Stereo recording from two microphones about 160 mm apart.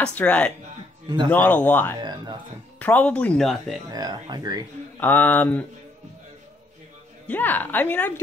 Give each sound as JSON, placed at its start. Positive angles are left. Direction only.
{"t": 0.0, "sound": "speech", "side_deg": 10}
{"t": 1.0, "sound": "a man's voice", "side_deg": -30}
{"t": 1.3, "sound": "speech", "side_deg": 10}
{"t": 2.0, "sound": "speech", "side_deg": -25}
{"t": 2.8, "sound": "speech", "side_deg": 10}
{"t": 3.9, "sound": "speech", "side_deg": -25}
{"t": 5.0, "sound": "speech", "side_deg": 10}
{"t": 7.2, "sound": "speech", "side_deg": 10}